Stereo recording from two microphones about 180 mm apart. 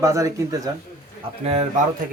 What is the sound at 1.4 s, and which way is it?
Speech, 35° right (ahead or behind).